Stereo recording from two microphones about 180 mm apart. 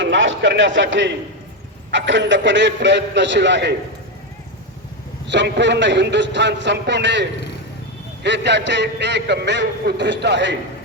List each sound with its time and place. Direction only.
0.0 s a man's voice: 90° right; by 3.8 s 75° right (ahead or behind)
5.3 s a man's voice: 80° right